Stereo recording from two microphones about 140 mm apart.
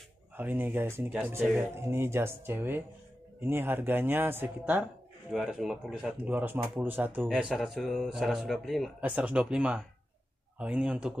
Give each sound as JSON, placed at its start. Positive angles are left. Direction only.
{"t": 0.4, "sound": "speech", "side_deg": -15}
{"t": 5.3, "sound": "speech", "side_deg": 0}